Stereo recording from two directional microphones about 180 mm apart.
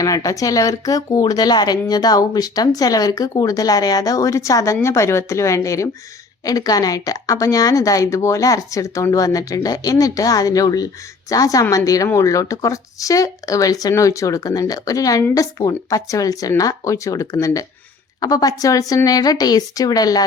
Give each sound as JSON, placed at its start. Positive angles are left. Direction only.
{"t": 0.0, "sound": "speech", "side_deg": 20}